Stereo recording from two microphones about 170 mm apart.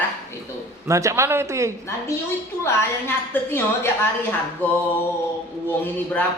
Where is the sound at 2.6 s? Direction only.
15° left (ahead or behind).